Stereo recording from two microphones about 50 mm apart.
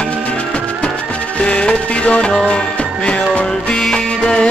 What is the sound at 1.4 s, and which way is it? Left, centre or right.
Music, centre.